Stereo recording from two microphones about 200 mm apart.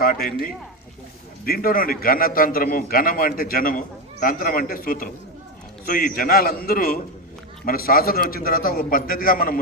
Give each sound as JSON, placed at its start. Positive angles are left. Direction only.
{"t": 1.5, "sound": "a man's voice", "side_deg": 45}